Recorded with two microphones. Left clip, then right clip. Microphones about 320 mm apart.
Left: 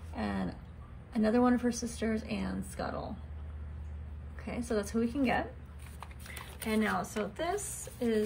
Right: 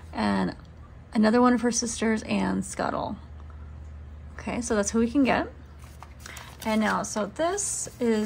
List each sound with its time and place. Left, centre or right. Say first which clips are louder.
0.2 s a sound: right 10 dB; right
1.1 s a woman's voice: right 7 dB; right
4.4 s a woman's voice: right 8 dB; right